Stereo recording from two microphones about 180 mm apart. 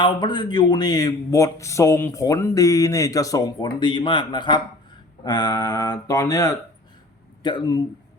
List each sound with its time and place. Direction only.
0.0 s speech: 25° left (ahead or behind)